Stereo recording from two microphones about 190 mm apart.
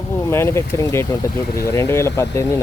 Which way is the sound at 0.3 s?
15° left (ahead or behind).